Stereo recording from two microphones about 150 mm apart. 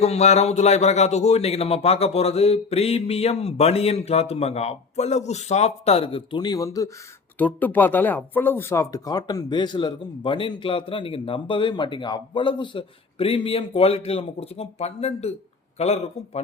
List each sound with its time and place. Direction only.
0.0 s a man's voice: 45° left (ahead or behind); by 6.9 s 20° left (ahead or behind)
7.3 s a man's voice: 10° left (ahead or behind); by 16.4 s 45° left (ahead or behind)